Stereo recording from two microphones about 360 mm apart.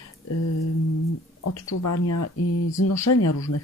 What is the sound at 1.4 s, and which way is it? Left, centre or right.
Speech, left.